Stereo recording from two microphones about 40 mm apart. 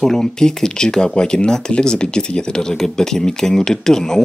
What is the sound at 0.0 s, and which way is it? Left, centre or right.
Speech, centre.